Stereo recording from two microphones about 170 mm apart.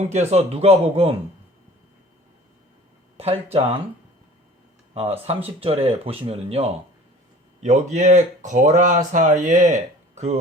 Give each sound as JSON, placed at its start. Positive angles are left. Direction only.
{"t": 0.1, "sound": "speech", "side_deg": -40}
{"t": 3.2, "sound": "speech", "side_deg": -35}
{"t": 4.9, "sound": "speech", "side_deg": -35}